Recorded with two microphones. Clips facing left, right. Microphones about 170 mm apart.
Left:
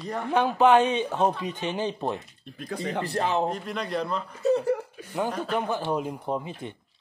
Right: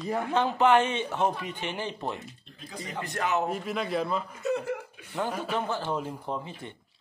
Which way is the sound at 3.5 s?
5° right (ahead or behind).